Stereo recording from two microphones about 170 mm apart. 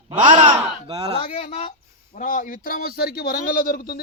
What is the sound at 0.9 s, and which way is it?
Speech, 35° right (ahead or behind).